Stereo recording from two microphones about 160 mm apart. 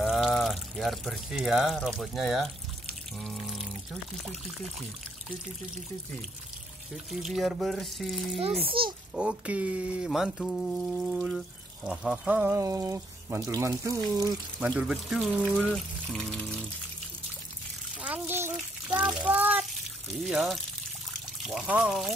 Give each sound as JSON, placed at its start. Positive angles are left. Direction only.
{"t": 0.0, "sound": "speech", "side_deg": 0}
{"t": 7.1, "sound": "speech", "side_deg": 0}
{"t": 8.4, "sound": "a child's voice", "side_deg": -35}
{"t": 9.1, "sound": "speech", "side_deg": -5}
{"t": 14.6, "sound": "speech", "side_deg": -10}
{"t": 15.7, "sound": "speech", "side_deg": 5}
{"t": 18.0, "sound": "water", "side_deg": -10}
{"t": 18.9, "sound": "a sound", "side_deg": -5}
{"t": 20.2, "sound": "speech", "side_deg": 0}